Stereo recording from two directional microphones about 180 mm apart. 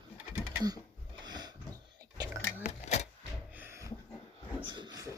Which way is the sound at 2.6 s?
40° left (ahead or behind).